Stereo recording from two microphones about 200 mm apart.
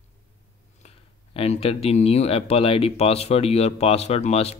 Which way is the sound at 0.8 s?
30° left (ahead or behind).